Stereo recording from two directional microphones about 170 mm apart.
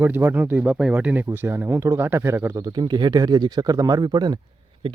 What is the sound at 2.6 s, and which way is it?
Speech, 25° right (ahead or behind).